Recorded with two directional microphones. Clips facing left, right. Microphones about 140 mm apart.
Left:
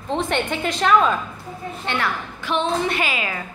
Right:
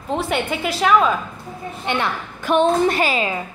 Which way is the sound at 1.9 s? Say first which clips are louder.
Right 3 dB; 15° right (ahead or behind).